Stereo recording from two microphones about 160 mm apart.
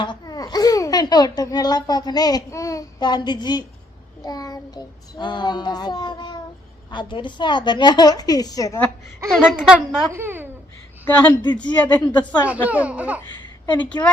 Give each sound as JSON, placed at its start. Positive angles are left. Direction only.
{"t": 0.0, "sound": "a child's voice", "side_deg": 25}
{"t": 4.2, "sound": "child singing", "side_deg": 25}
{"t": 9.3, "sound": "a woman's voice", "side_deg": -5}
{"t": 11.0, "sound": "speech", "side_deg": 10}
{"t": 12.6, "sound": "speech", "side_deg": -10}
{"t": 14.0, "sound": "speech", "side_deg": 15}